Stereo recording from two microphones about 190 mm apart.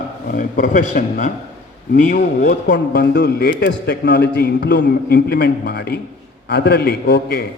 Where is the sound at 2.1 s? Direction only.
55° left (ahead or behind).